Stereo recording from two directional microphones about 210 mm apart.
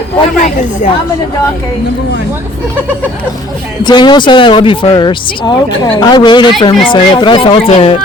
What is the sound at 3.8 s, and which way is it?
Speech, 20° left (ahead or behind).